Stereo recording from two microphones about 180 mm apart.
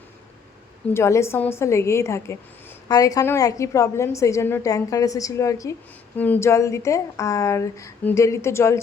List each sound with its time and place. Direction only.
0.9 s a woman's voice: 15° left (ahead or behind)